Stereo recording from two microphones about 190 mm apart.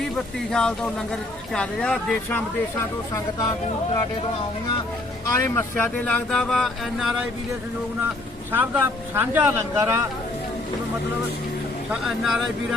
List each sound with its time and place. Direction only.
0.5 s speech: 5° left (ahead or behind)
5.2 s speech: 15° left (ahead or behind); by 7.3 s centre (ahead or behind)
8.5 s speech: 10° right (ahead or behind)
11.9 s speech: centre (ahead or behind)